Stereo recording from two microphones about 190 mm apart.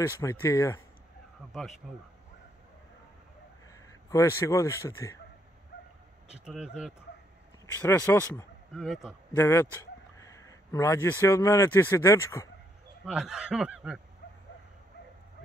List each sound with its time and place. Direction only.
0.0 s speech: 15° left (ahead or behind)
1.4 s speech: 5° right (ahead or behind)
3.7 s speech: 15° left (ahead or behind)
6.3 s speech: 5° right (ahead or behind)
7.8 s speech: 10° left (ahead or behind)
8.7 s speech: centre (ahead or behind)
9.4 s speech: 15° left (ahead or behind)
13.0 s speech: 5° right (ahead or behind)